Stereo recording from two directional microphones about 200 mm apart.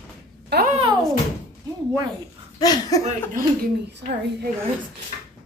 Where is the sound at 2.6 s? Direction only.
20° left (ahead or behind).